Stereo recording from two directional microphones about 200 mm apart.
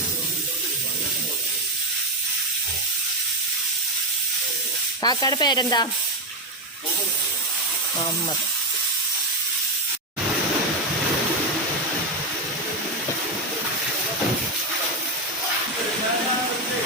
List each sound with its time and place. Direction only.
5.0 s sizzle: 20° left (ahead or behind)